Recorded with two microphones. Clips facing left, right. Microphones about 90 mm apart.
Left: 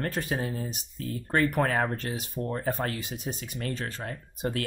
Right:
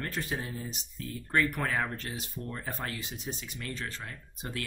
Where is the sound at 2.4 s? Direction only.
75° left (ahead or behind).